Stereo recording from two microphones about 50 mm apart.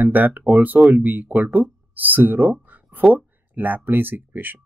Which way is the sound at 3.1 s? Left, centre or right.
Right.